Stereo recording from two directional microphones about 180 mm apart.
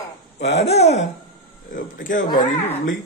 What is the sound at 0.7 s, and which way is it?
Speech, 35° left (ahead or behind).